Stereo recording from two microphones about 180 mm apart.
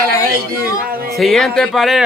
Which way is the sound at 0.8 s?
55° right (ahead or behind).